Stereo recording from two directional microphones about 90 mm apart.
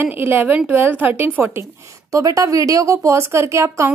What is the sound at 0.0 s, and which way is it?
A woman's voice, 20° right (ahead or behind).